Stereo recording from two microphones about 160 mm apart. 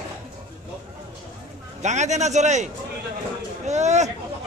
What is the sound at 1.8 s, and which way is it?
A man's voice, 45° right (ahead or behind).